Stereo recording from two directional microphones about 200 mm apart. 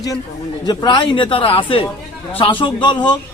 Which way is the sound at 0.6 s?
20° left (ahead or behind).